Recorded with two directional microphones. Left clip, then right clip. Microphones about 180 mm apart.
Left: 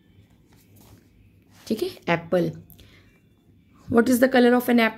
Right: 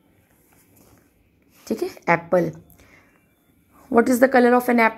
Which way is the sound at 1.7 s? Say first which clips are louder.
Right 4 dB; 20° left (ahead or behind).